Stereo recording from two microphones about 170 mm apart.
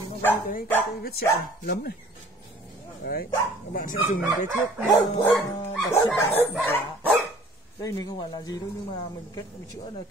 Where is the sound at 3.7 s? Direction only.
55° left (ahead or behind).